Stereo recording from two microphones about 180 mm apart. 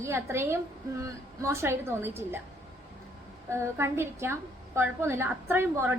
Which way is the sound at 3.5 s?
15° right (ahead or behind).